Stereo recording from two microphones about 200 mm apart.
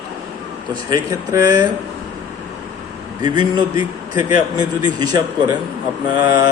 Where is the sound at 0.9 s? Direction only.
15° right (ahead or behind).